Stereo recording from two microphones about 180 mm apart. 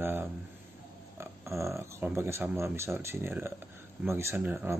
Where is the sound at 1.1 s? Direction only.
15° right (ahead or behind).